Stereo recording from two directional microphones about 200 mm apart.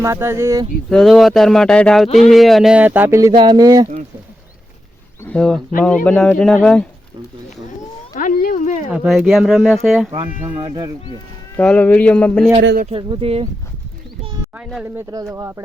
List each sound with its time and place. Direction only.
0.0 s speech: 15° right (ahead or behind)
0.9 s speech: centre (ahead or behind)
2.0 s speech: 35° left (ahead or behind)
2.3 s speech: centre (ahead or behind); by 3.8 s 20° right (ahead or behind)
5.2 s speech: 5° left (ahead or behind)
8.1 s a sound: 40° left (ahead or behind)
8.9 s speech: centre (ahead or behind)
10.5 s speech: 20° right (ahead or behind)
11.5 s speech: 5° left (ahead or behind)
12.9 s speech: 25° right (ahead or behind)
14.5 s speech: centre (ahead or behind)
14.9 s speech: 15° right (ahead or behind)